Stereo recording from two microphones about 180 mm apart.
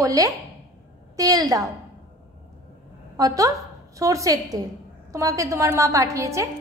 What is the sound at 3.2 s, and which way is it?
A woman's voice, 20° right (ahead or behind).